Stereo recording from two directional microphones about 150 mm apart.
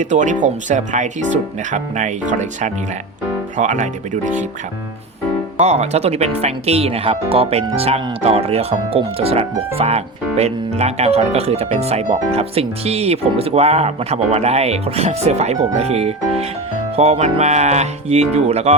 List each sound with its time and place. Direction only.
0.0 s speech: 55° right (ahead or behind)
5.5 s speech: 50° right (ahead or behind)